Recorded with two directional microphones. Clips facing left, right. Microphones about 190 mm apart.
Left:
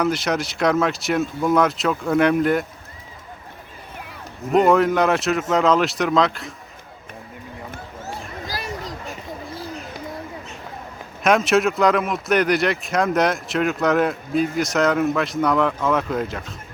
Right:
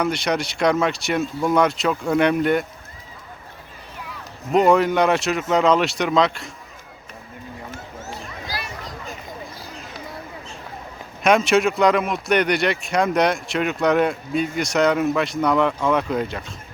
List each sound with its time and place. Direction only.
0.0 s speech: centre (ahead or behind)
4.5 s speech: centre (ahead or behind)
8.1 s a sound: 45° left (ahead or behind)
11.2 s speech: centre (ahead or behind)